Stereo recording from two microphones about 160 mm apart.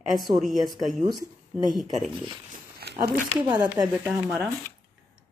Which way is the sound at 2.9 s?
90° right.